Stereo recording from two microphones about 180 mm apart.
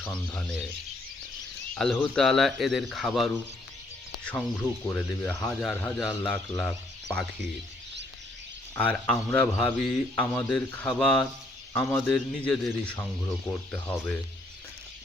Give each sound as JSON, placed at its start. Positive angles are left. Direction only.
{"t": 0.0, "sound": "rub", "side_deg": 5}
{"t": 1.7, "sound": "speech", "side_deg": 5}
{"t": 4.9, "sound": "a man's voice", "side_deg": 10}
{"t": 8.7, "sound": "a man's voice", "side_deg": 5}